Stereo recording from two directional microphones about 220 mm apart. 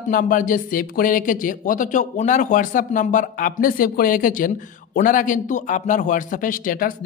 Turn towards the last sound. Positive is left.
turn(degrees=40)  # may be behind; listen again after turning